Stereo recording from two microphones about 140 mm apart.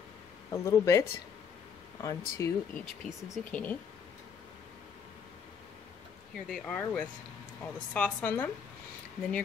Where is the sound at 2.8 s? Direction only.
65° left (ahead or behind).